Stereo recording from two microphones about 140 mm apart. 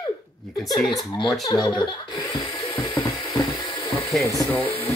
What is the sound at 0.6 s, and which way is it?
Speech, centre (ahead or behind).